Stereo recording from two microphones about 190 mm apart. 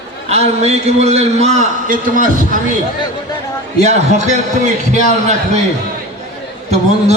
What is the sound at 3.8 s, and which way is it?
A man's voice, 35° right (ahead or behind).